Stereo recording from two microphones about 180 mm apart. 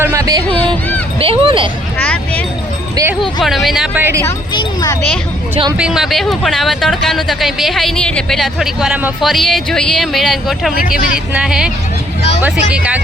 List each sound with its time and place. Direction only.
0.0 s speech: 15° right (ahead or behind)
1.2 s speech: 30° right (ahead or behind)
2.0 s speech: 10° left (ahead or behind)
2.9 s speech: 15° right (ahead or behind)
3.4 s speech: centre (ahead or behind)
4.5 s speech: 20° left (ahead or behind)
5.7 s speech: 5° right (ahead or behind)
10.8 s speech: 50° left (ahead or behind)
11.3 s speech: 5° right (ahead or behind)
12.7 s speech: 5° right (ahead or behind)